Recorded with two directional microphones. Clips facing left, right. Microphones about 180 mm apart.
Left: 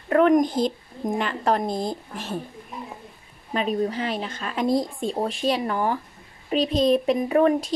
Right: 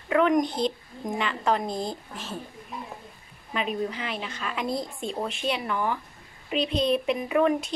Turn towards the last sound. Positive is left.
turn(degrees=40)  # may be behind; listen again after turning